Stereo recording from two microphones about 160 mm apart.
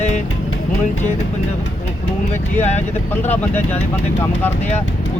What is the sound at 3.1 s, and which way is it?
Speech, 10° left (ahead or behind).